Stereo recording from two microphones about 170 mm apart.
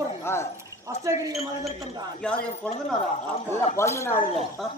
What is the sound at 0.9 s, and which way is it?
Speech, 20° right (ahead or behind).